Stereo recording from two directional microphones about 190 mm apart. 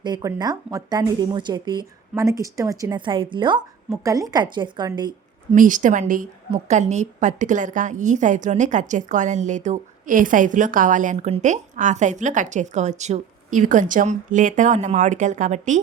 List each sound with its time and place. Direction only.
0.0 s a woman's voice: 20° right (ahead or behind)
5.5 s a woman's voice: 45° right (ahead or behind)